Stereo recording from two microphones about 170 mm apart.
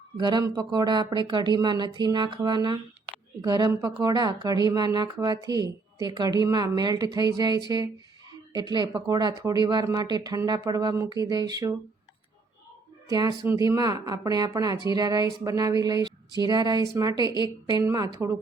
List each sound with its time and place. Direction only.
0.2 s speech: 25° right (ahead or behind)
8.3 s a sound: 25° right (ahead or behind)
9.0 s speech: 25° right (ahead or behind)
13.1 s speech: 20° right (ahead or behind)